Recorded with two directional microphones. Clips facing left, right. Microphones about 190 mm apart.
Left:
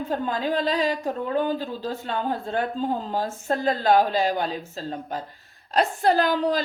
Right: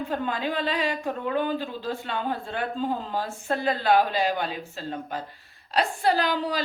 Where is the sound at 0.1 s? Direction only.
40° left (ahead or behind).